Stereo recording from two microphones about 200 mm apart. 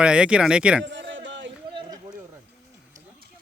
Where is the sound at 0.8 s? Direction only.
60° right (ahead or behind).